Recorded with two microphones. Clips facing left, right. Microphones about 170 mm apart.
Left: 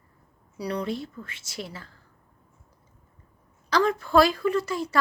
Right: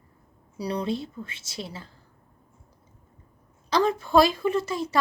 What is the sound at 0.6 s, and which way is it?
A woman's voice, 25° right (ahead or behind).